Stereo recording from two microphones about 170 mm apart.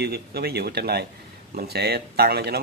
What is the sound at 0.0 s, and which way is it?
A man's voice, 70° right (ahead or behind).